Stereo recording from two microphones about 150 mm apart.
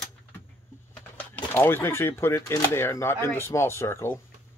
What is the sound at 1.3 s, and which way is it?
Speech, 15° left (ahead or behind).